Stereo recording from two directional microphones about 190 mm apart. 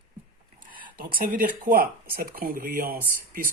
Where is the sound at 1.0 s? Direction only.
50° right (ahead or behind).